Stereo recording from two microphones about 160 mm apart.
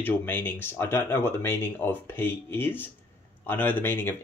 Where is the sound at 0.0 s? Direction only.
10° left (ahead or behind).